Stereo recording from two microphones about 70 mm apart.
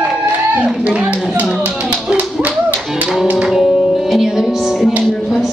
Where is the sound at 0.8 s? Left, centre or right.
Centre.